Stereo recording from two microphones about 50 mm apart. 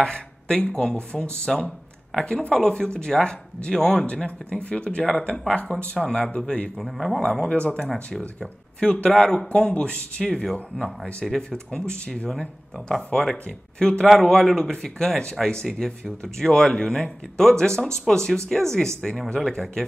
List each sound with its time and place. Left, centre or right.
0.0 s speech: centre
5.5 s speech: left
6.8 s speech: centre
7.2 s speech: centre